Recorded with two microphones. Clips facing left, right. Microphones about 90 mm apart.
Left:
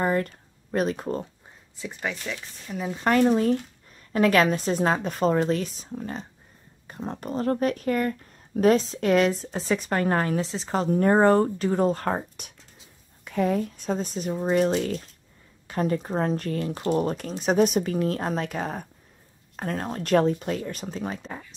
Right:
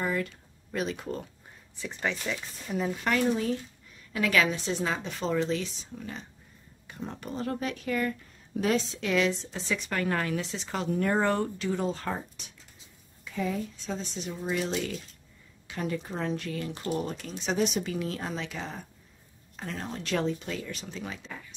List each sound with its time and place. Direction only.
0.0 s speech: 45° left (ahead or behind)
1.8 s speech: 10° left (ahead or behind)
3.1 s speech: 45° left (ahead or behind)